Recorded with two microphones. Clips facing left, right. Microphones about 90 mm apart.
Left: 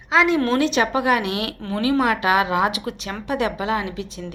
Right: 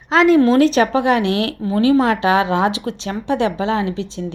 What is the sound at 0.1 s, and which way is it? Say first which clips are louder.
A woman's voice: right 6 dB; 40° right (ahead or behind).